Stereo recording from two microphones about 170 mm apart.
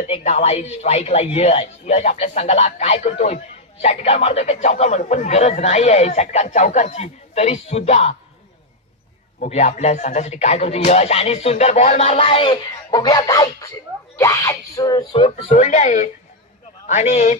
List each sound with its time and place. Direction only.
0.0 s speech: 40° left (ahead or behind)
9.4 s speech: 45° left (ahead or behind)
15.5 s a man's voice: 45° left (ahead or behind)